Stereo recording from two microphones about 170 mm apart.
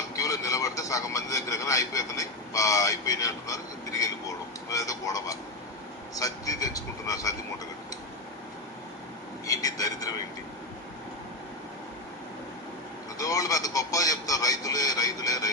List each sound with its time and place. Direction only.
0.2 s a man's voice: 20° left (ahead or behind)
9.5 s speech: 20° left (ahead or behind)
13.1 s speech: 20° left (ahead or behind)